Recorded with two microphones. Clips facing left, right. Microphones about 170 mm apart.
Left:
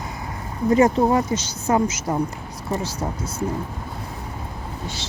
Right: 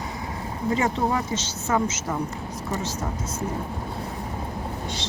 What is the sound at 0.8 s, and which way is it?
Speech, 40° left (ahead or behind).